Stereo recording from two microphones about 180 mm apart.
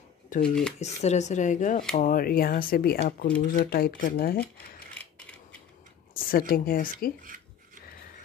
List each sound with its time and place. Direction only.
0.4 s speech: 5° left (ahead or behind)
0.7 s speech: 40° left (ahead or behind); by 4.5 s 55° left (ahead or behind)
6.1 s speech: 55° left (ahead or behind)